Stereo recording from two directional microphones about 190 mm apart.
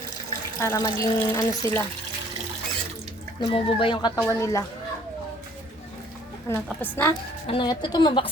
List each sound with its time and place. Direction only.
0.6 s speech: 15° left (ahead or behind)
3.4 s a woman's voice: 25° left (ahead or behind)
6.5 s speech: 10° left (ahead or behind)
7.4 s a woman's voice: 25° left (ahead or behind)